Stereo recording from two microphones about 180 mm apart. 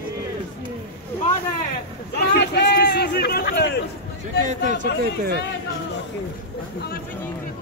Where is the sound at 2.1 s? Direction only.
65° left (ahead or behind).